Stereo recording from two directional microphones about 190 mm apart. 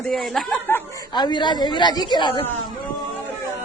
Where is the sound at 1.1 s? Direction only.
25° left (ahead or behind).